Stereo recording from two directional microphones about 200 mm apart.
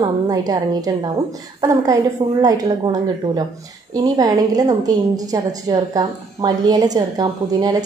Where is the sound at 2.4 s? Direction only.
20° right (ahead or behind).